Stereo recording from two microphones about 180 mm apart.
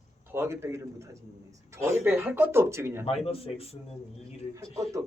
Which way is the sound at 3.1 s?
35° left (ahead or behind).